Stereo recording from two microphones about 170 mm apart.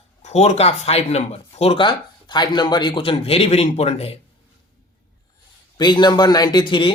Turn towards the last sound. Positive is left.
turn(degrees=30)  # may be behind; listen again after turning